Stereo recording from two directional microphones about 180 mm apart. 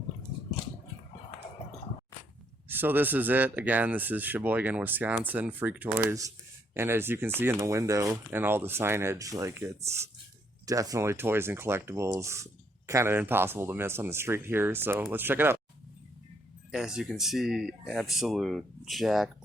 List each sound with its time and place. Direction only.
2.6 s speech: 10° right (ahead or behind)
16.7 s speech: centre (ahead or behind)